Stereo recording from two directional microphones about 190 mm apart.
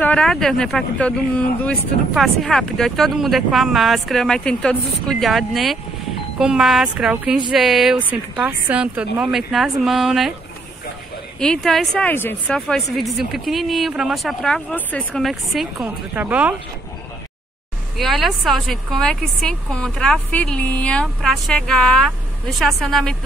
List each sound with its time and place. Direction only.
0.0 s speech: 5° left (ahead or behind)
11.3 s speech: 5° left (ahead or behind)
17.9 s speech: centre (ahead or behind)